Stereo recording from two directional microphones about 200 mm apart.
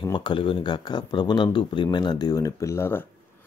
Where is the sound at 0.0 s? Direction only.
20° left (ahead or behind).